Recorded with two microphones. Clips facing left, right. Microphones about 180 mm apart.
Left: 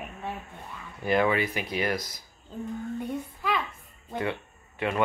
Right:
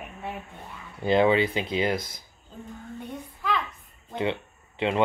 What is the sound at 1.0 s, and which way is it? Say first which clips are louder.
Speech: right 4 dB; 25° right (ahead or behind).